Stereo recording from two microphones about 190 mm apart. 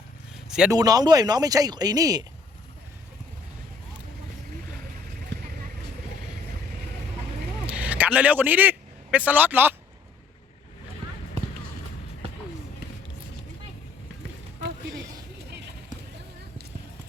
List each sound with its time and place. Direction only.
0.4 s vehicle: 5° right (ahead or behind)
0.7 s speech: 20° right (ahead or behind)
7.7 s vehicle: 5° right (ahead or behind)